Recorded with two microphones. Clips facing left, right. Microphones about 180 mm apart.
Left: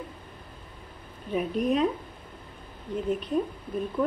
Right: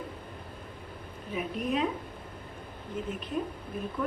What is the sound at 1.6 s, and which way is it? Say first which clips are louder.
Speech: left 5 dB; 40° left (ahead or behind).